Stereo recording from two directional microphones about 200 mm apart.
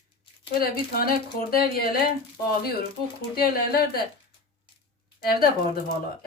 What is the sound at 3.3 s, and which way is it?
Speech, 50° left (ahead or behind).